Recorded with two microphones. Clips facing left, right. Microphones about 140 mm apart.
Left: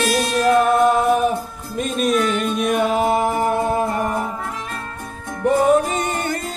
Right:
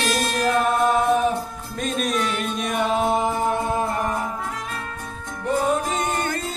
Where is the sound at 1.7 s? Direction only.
Centre (ahead or behind).